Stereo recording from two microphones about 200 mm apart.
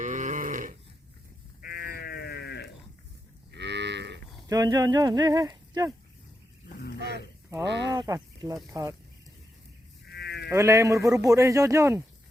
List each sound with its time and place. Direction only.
0.0 s sheep: 40° right (ahead or behind)
1.6 s sheep: 50° left (ahead or behind)
3.5 s moo: 60° right (ahead or behind)
4.4 s speech: 20° right (ahead or behind)
7.7 s speech: 60° right (ahead or behind)
7.9 s speech: 15° right (ahead or behind)
10.1 s sheep: 55° left (ahead or behind)
10.5 s speech: 15° right (ahead or behind)